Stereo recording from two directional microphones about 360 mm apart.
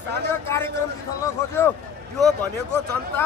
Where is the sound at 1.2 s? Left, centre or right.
Centre.